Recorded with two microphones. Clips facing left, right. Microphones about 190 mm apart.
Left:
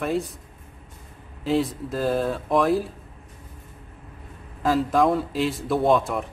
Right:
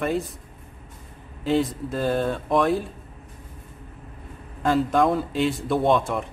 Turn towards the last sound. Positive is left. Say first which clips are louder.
# left 1 dB
turn(degrees=0)  # may be behind; listen again after turning